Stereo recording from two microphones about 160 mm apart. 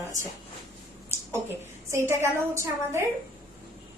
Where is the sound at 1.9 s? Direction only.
15° right (ahead or behind).